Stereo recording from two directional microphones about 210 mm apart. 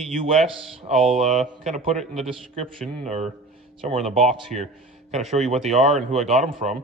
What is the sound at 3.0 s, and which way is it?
Speech, 35° right (ahead or behind).